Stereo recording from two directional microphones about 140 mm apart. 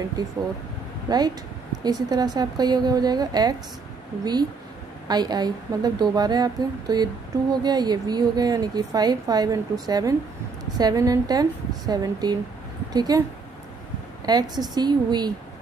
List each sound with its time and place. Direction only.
0.2 s a woman's voice: 30° right (ahead or behind)
14.2 s a woman's voice: 30° right (ahead or behind)